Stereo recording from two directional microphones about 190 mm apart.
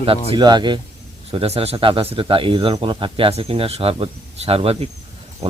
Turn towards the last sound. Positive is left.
turn(degrees=-35)  # may be behind; listen again after turning